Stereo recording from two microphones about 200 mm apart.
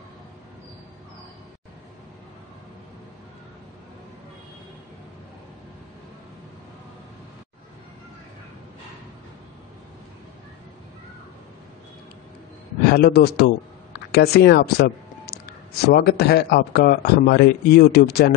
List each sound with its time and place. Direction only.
12.9 s speech: 50° left (ahead or behind)